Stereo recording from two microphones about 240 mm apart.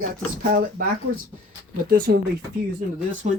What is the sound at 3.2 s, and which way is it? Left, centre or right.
Speech, right.